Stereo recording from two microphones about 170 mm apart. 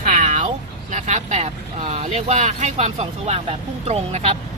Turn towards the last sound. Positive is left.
turn(degrees=-40)  # may be behind; listen again after turning